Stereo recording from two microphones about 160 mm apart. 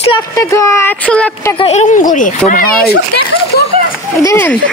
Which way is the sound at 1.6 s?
45° left (ahead or behind).